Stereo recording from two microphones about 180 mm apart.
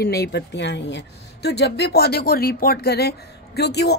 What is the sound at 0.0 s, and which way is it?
A woman's voice, 60° left (ahead or behind).